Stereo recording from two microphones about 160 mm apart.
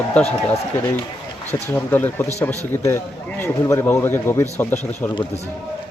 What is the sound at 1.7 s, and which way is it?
Speech, 10° left (ahead or behind).